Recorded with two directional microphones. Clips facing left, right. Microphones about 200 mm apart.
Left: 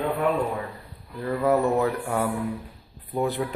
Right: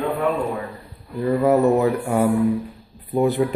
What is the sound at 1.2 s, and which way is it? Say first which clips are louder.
Speech: right 6 dB; 20° right (ahead or behind).